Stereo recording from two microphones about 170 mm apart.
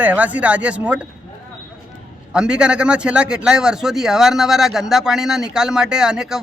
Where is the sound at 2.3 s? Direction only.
5° right (ahead or behind).